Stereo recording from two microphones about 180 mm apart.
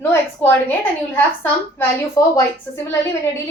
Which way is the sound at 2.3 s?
15° left (ahead or behind).